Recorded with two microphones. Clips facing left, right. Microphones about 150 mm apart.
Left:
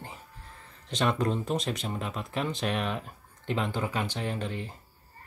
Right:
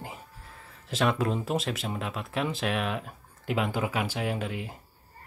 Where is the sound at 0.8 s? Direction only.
5° right (ahead or behind).